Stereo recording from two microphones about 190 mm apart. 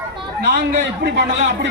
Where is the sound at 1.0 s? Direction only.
65° right (ahead or behind).